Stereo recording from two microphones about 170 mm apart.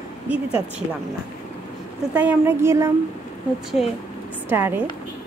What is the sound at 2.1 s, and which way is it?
Speech, 10° right (ahead or behind).